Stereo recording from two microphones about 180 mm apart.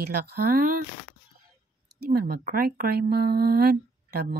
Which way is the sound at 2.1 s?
55° right (ahead or behind).